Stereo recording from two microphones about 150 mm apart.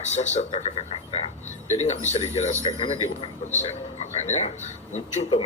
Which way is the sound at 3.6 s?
45° left (ahead or behind).